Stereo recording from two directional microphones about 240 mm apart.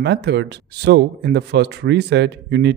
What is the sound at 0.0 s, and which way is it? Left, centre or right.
A man's voice, right.